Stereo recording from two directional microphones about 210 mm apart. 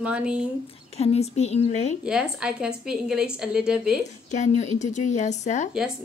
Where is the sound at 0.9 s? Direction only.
30° left (ahead or behind).